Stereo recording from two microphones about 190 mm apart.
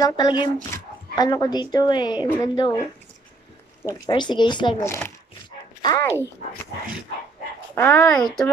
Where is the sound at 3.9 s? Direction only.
25° left (ahead or behind).